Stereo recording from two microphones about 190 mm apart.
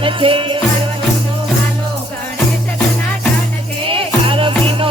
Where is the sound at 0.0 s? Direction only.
25° right (ahead or behind).